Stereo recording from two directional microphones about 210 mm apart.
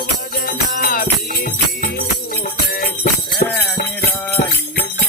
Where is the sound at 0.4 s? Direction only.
40° left (ahead or behind).